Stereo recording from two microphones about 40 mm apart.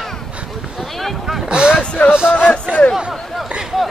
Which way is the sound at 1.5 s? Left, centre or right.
Right.